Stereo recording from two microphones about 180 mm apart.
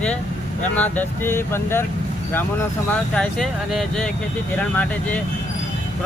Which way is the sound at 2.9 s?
5° left (ahead or behind).